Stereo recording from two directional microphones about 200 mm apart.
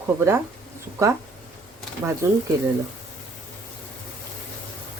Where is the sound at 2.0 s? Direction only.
10° right (ahead or behind).